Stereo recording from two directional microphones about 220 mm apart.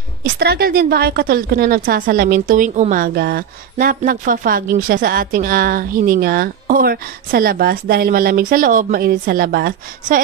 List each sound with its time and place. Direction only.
0.2 s a woman's voice: 45° right (ahead or behind)